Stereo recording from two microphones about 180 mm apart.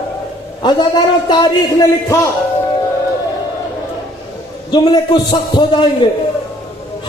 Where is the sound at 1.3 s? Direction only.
20° left (ahead or behind).